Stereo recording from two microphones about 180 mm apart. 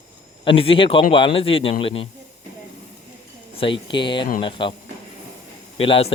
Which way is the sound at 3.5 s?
30° left (ahead or behind).